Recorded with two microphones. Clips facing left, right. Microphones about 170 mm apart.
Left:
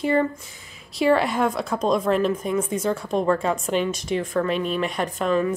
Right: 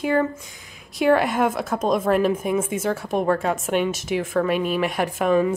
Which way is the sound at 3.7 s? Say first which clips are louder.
Right 2 dB; 60° right (ahead or behind).